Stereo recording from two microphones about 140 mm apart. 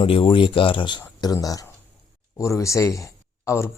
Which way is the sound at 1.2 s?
25° left (ahead or behind).